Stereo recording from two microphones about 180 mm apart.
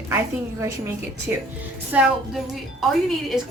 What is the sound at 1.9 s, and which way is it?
Speech, 5° right (ahead or behind).